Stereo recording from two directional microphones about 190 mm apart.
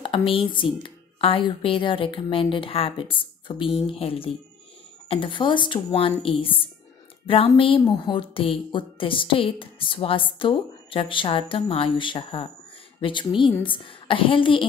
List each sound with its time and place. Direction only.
0.0 s speech: 25° left (ahead or behind)